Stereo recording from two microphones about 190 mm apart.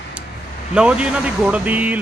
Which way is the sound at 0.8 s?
5° right (ahead or behind).